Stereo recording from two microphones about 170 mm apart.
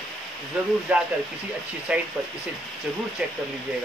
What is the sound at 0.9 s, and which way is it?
Speech, 5° right (ahead or behind).